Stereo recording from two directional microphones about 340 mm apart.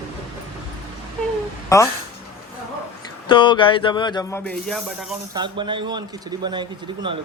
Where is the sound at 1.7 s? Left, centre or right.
Centre.